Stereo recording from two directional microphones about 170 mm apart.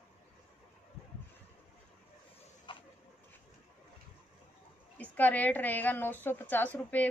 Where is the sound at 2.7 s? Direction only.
30° left (ahead or behind).